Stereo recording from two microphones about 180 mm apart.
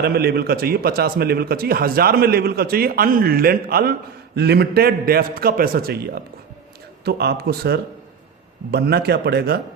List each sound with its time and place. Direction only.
0.0 s a man's voice: 60° right (ahead or behind)